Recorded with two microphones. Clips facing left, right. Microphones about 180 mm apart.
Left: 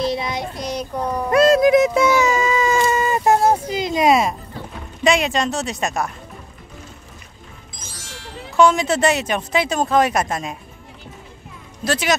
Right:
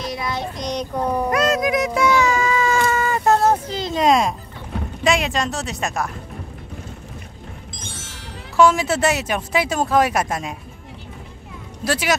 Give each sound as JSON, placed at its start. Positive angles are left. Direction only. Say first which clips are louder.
{"t": 0.0, "sound": "child singing", "louder": "left 6 dB", "side_deg": 25}
{"t": 0.3, "sound": "child singing", "louder": "even", "side_deg": 10}
{"t": 1.0, "sound": "a sound", "louder": "right 3 dB", "side_deg": -5}
{"t": 1.3, "sound": "music", "louder": "left 10 dB", "side_deg": 30}
{"t": 5.0, "sound": "a woman's voice", "louder": "left 2 dB", "side_deg": 0}
{"t": 8.5, "sound": "speech", "louder": "left 1 dB", "side_deg": -5}
{"t": 11.8, "sound": "speech", "louder": "left 1 dB", "side_deg": -10}